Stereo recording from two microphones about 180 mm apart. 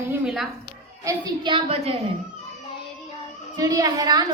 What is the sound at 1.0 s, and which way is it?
Speech, 25° right (ahead or behind).